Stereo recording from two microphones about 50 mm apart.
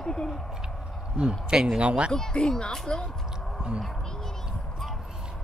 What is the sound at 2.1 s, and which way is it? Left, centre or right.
Speech, centre.